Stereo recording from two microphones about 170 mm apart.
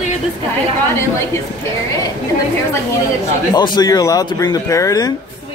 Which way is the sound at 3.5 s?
25° left (ahead or behind).